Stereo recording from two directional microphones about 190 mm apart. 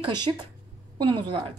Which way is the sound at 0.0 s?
25° right (ahead or behind).